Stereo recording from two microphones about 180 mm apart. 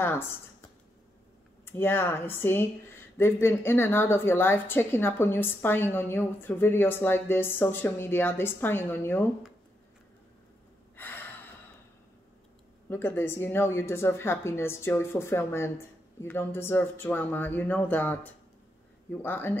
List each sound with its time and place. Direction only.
1.7 s a woman's voice: 10° left (ahead or behind)
11.0 s gasp: 10° left (ahead or behind)
12.9 s a woman's voice: 10° left (ahead or behind)